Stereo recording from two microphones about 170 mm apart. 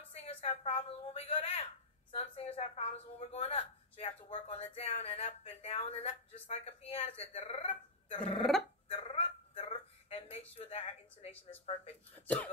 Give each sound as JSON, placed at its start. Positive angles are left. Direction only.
{"t": 0.1, "sound": "a woman's voice", "side_deg": 35}
{"t": 8.8, "sound": "a sound", "side_deg": 35}
{"t": 11.7, "sound": "speech", "side_deg": 35}
{"t": 12.3, "sound": "cough", "side_deg": 10}